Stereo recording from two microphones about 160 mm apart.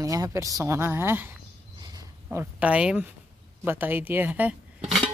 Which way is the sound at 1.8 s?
20° right (ahead or behind).